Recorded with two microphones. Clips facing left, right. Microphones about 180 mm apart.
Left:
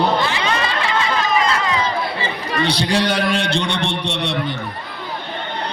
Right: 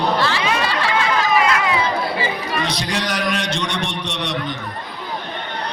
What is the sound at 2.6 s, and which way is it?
A man's voice, 30° left (ahead or behind).